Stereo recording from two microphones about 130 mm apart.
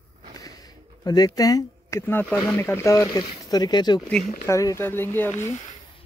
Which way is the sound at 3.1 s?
35° left (ahead or behind).